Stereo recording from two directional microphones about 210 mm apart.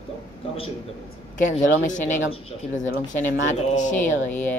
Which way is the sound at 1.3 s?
35° left (ahead or behind).